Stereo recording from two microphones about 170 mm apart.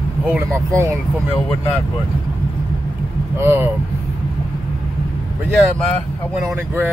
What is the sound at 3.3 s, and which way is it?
Speech, 15° right (ahead or behind).